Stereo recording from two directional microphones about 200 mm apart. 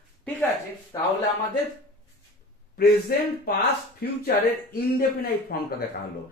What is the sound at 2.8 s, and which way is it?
Speech, 50° left (ahead or behind).